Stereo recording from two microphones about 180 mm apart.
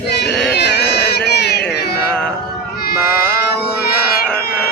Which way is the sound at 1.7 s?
65° left (ahead or behind).